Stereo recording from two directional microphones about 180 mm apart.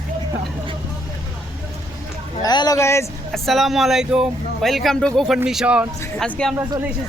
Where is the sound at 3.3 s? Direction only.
Centre (ahead or behind).